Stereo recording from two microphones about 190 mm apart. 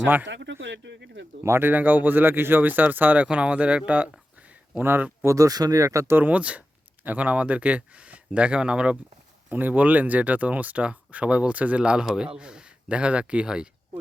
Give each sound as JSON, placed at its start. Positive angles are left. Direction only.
{"t": 0.3, "sound": "speech", "side_deg": -70}
{"t": 1.5, "sound": "speech", "side_deg": -10}